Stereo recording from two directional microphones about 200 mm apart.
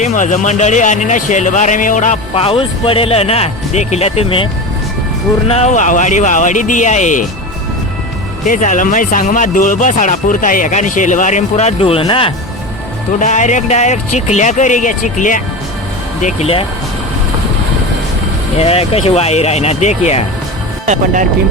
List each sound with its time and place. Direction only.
0.0 s speech: 35° left (ahead or behind)
5.5 s speech: 35° left (ahead or behind)
8.4 s speech: 40° left (ahead or behind)
13.1 s speech: 40° left (ahead or behind)
18.6 s speech: 30° left (ahead or behind)
20.8 s speech: 35° right (ahead or behind)